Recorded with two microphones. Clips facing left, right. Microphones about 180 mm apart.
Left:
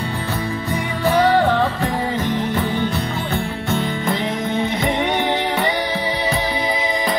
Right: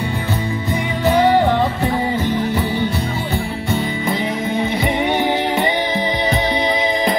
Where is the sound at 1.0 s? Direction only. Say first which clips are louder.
Right 2 dB; 15° right (ahead or behind).